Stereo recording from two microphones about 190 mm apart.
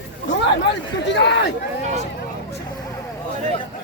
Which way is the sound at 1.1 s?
65° left (ahead or behind).